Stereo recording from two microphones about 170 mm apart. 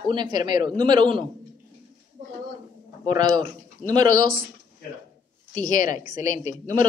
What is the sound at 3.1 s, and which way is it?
Speech, 25° right (ahead or behind).